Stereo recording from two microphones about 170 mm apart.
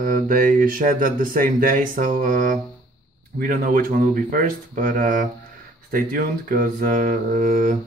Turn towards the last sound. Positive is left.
turn(degrees=-50)  # may be behind; listen again after turning